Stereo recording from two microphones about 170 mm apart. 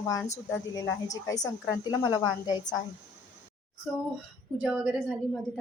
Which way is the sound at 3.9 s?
5° right (ahead or behind).